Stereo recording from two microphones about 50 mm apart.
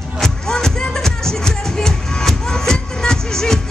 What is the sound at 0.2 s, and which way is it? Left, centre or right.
Music, centre.